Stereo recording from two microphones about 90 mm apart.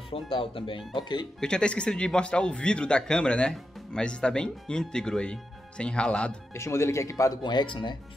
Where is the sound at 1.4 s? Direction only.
10° left (ahead or behind).